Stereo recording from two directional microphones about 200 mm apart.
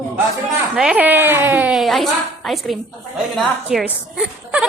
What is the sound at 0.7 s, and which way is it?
A woman's voice, 5° right (ahead or behind).